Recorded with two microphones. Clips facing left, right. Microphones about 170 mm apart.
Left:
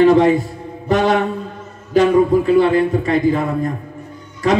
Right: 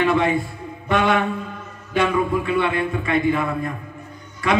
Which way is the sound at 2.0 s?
40° left (ahead or behind).